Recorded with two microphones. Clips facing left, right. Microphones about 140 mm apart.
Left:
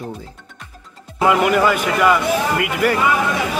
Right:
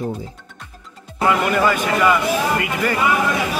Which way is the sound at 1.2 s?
15° left (ahead or behind).